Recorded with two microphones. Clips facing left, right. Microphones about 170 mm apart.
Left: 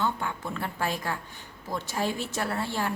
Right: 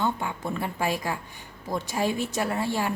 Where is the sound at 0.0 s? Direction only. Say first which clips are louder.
Right 2 dB; 15° right (ahead or behind).